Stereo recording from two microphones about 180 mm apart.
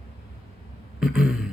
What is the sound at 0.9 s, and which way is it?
Speech, 5° right (ahead or behind).